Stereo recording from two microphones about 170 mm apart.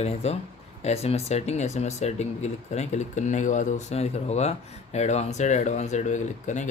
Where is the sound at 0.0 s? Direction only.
40° left (ahead or behind).